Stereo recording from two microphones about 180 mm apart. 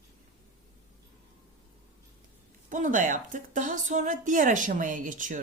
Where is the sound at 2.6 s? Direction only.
45° right (ahead or behind).